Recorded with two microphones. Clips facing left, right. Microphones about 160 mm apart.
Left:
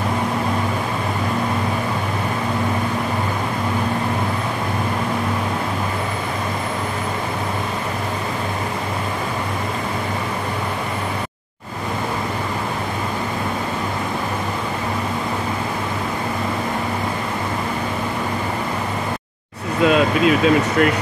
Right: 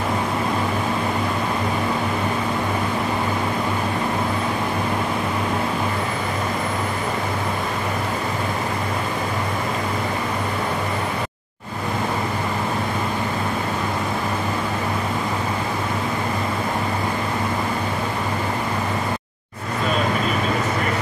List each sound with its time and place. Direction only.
19.9 s vehicle: 90° left